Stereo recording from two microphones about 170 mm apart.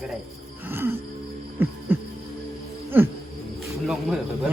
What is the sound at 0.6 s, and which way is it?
Music, 10° right (ahead or behind).